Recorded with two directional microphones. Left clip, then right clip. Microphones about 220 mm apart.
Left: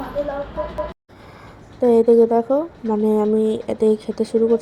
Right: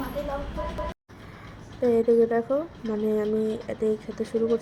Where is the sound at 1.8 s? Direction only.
20° left (ahead or behind).